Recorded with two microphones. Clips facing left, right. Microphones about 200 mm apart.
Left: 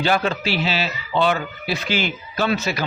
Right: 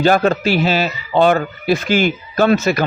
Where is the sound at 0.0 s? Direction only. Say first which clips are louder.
Right 7 dB; 45° right (ahead or behind).